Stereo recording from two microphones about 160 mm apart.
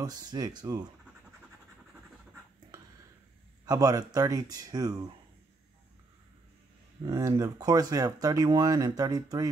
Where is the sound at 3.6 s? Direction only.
25° right (ahead or behind).